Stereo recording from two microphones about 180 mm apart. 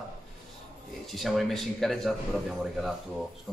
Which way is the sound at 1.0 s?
Centre (ahead or behind).